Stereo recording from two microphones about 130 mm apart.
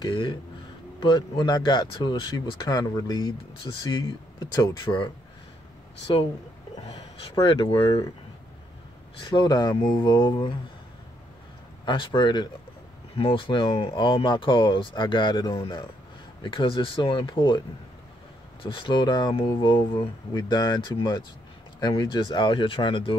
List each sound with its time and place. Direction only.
0.0 s speech: 35° left (ahead or behind)
6.9 s speech: 30° left (ahead or behind)
9.2 s speech: 35° left (ahead or behind)
11.8 s speech: 35° left (ahead or behind)
18.6 s speech: 40° left (ahead or behind)